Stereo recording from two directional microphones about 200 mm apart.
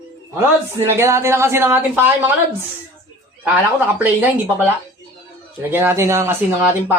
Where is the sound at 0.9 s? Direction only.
15° right (ahead or behind).